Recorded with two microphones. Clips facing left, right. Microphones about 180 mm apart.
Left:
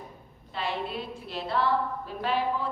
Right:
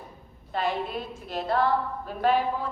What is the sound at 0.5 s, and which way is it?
A woman's voice, 45° right (ahead or behind).